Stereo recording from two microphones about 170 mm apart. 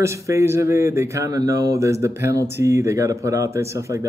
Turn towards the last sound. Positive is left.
turn(degrees=-15)  # may be behind; listen again after turning